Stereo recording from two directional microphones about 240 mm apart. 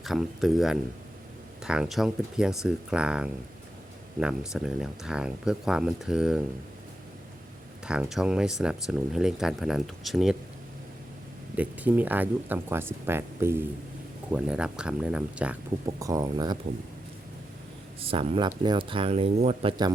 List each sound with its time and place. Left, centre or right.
0.0 s speech: centre
7.9 s speech: centre
11.5 s speech: centre
18.0 s speech: right